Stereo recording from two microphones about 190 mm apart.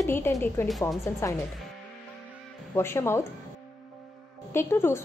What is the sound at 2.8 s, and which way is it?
Speech, 15° left (ahead or behind).